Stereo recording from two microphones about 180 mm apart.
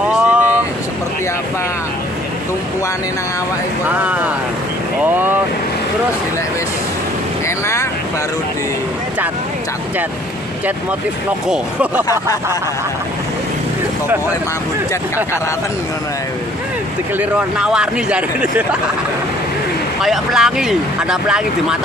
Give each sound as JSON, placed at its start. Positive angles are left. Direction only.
{"t": 0.1, "sound": "vehicle", "side_deg": -10}
{"t": 4.0, "sound": "speech", "side_deg": -10}
{"t": 7.4, "sound": "boat", "side_deg": 15}
{"t": 11.4, "sound": "speech", "side_deg": -5}
{"t": 17.2, "sound": "speech", "side_deg": -5}
{"t": 20.0, "sound": "speech", "side_deg": 0}